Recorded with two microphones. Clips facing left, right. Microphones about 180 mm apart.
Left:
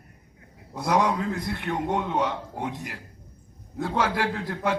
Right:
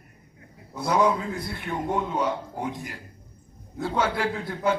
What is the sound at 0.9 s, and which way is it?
A man's voice, 85° left.